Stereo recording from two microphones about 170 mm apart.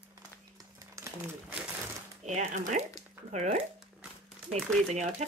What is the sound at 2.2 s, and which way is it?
Speech, 45° right (ahead or behind).